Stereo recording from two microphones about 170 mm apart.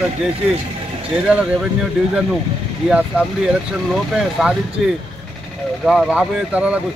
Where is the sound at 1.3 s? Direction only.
5° right (ahead or behind).